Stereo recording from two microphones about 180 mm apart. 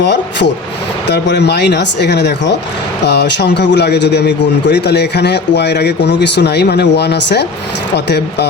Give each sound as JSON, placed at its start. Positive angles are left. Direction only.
{"t": 0.0, "sound": "a man's voice", "side_deg": 70}